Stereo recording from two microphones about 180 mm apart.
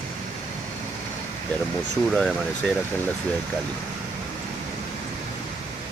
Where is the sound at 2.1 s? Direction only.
5° left (ahead or behind).